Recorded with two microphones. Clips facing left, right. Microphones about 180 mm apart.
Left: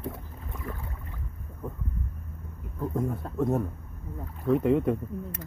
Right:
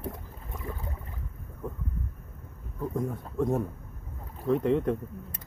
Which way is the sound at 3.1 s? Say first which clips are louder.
Left 1 dB; centre (ahead or behind).